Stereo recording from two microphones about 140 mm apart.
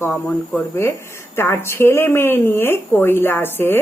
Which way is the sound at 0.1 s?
5° left (ahead or behind).